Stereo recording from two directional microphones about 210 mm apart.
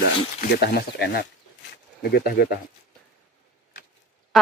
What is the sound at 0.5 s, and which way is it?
Speech, 50° left (ahead or behind).